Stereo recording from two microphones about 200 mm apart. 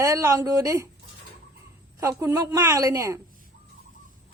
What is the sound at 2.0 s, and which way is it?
A woman's voice, 15° right (ahead or behind).